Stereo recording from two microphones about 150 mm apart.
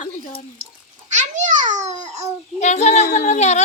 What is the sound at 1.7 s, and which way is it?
Babbling, 50° right (ahead or behind).